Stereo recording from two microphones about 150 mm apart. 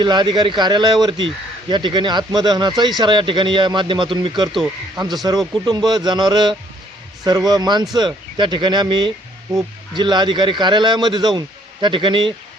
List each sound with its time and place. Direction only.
0.0 s a man's voice: 30° right (ahead or behind)
4.5 s speech: centre (ahead or behind)
5.2 s a man's voice: 25° right (ahead or behind)